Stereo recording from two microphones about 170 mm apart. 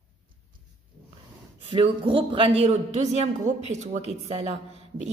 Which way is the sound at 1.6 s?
30° right (ahead or behind).